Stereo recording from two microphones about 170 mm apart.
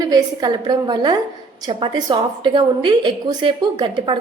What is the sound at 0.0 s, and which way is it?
A woman's voice, 25° right (ahead or behind).